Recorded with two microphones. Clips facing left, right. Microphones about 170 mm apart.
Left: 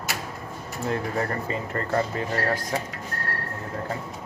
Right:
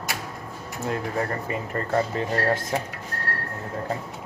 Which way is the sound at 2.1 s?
25° right (ahead or behind).